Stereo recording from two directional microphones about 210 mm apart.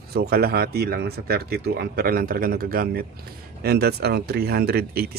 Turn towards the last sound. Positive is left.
turn(degrees=-50)  # may be behind; listen again after turning